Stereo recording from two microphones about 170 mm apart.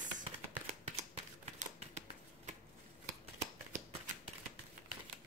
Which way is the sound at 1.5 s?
45° right (ahead or behind).